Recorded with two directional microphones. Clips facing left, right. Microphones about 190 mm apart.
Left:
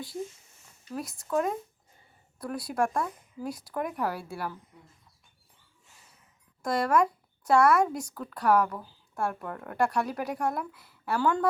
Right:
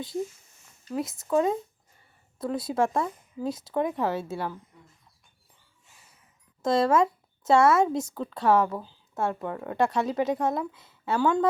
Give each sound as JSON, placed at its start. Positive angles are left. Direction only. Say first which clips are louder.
{"t": 0.9, "sound": "speech", "louder": "right 5 dB", "side_deg": -25}
{"t": 6.6, "sound": "speech", "louder": "right 3 dB", "side_deg": -25}